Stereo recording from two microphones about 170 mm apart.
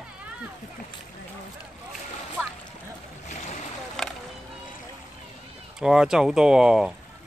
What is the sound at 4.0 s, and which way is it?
Music, centre (ahead or behind).